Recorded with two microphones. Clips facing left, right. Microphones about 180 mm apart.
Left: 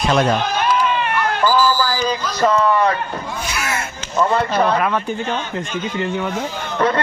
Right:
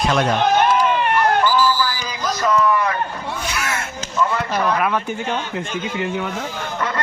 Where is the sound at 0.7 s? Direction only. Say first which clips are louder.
Right 1 dB; 50° right (ahead or behind).